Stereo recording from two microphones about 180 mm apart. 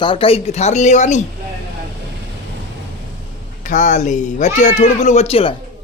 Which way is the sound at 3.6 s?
45° left (ahead or behind).